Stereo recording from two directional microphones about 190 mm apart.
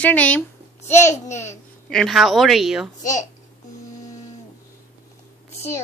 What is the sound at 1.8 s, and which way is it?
A woman's voice, centre (ahead or behind).